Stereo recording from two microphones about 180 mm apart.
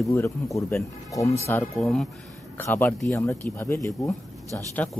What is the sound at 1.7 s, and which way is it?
Speech, 5° left (ahead or behind).